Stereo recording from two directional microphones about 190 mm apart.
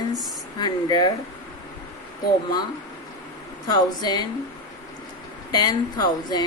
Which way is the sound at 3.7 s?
20° left (ahead or behind).